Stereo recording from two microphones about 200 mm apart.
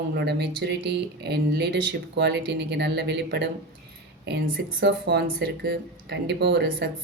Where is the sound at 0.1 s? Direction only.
55° right (ahead or behind).